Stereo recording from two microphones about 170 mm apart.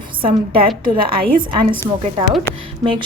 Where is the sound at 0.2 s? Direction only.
30° right (ahead or behind).